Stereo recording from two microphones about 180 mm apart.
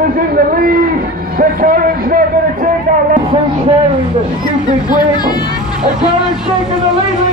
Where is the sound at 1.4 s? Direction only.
50° right (ahead or behind).